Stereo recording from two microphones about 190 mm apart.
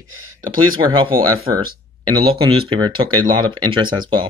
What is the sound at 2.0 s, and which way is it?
Speech, 30° right (ahead or behind).